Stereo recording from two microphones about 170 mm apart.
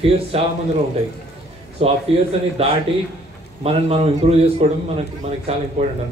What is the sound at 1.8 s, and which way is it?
A man's voice, 35° right (ahead or behind).